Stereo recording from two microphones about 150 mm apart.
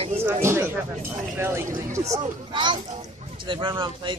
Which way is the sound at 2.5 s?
30° right (ahead or behind).